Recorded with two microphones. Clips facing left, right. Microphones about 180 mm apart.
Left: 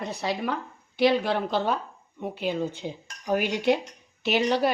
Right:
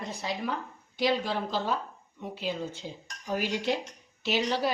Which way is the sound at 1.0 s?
65° left (ahead or behind).